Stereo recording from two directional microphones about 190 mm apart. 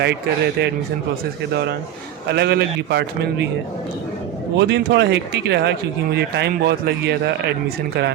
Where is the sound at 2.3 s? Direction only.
60° right (ahead or behind).